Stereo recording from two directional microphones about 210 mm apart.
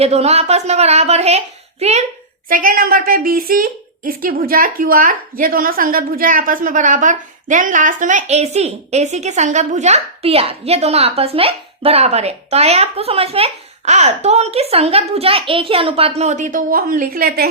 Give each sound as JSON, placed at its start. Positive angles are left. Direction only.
{"t": 0.0, "sound": "a woman's voice", "side_deg": -30}
{"t": 2.5, "sound": "a woman's voice", "side_deg": -40}